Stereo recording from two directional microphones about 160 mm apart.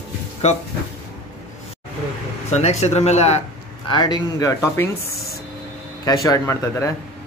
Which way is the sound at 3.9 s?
25° left (ahead or behind).